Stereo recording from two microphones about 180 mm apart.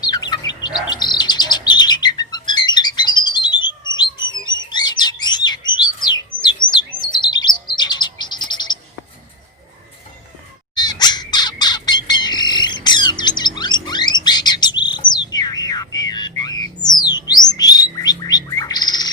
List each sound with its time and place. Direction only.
0.0 s chirp: 20° left (ahead or behind)
10.8 s squawk: 25° left (ahead or behind)
13.6 s music: 25° left (ahead or behind)
14.3 s bird: 25° left (ahead or behind)